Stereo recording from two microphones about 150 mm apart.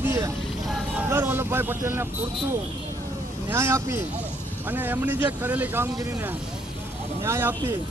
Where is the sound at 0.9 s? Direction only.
15° right (ahead or behind).